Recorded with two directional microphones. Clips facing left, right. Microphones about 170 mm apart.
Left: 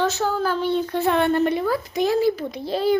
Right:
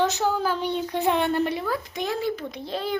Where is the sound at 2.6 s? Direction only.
35° left (ahead or behind).